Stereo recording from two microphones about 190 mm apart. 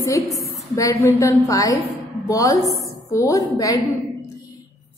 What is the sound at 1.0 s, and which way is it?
A woman's voice, 20° left (ahead or behind).